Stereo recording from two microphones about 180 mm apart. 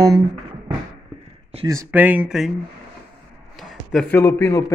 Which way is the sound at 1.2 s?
35° right (ahead or behind).